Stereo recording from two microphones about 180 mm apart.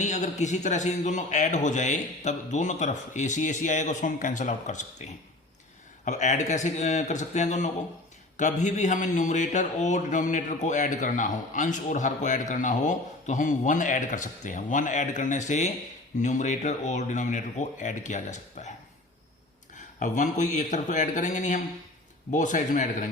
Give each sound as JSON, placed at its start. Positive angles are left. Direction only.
{"t": 0.0, "sound": "a man's voice", "side_deg": 40}
{"t": 6.1, "sound": "a man's voice", "side_deg": 40}
{"t": 19.7, "sound": "a man's voice", "side_deg": 45}